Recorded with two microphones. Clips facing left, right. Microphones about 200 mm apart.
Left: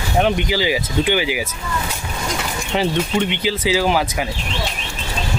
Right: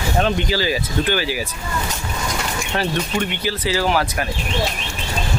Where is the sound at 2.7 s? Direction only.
15° left (ahead or behind).